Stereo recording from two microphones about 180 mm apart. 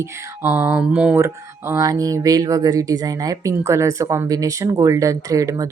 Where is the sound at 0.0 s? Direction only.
15° right (ahead or behind).